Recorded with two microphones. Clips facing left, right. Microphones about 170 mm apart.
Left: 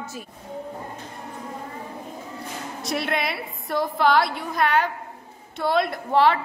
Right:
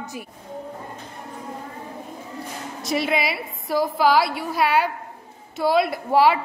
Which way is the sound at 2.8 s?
Centre (ahead or behind).